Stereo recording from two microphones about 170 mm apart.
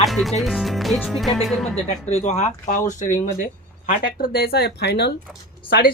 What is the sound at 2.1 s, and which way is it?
Speech, 40° left (ahead or behind).